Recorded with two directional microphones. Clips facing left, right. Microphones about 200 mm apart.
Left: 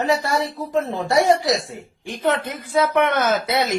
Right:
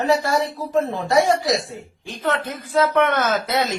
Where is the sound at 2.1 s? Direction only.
15° left (ahead or behind).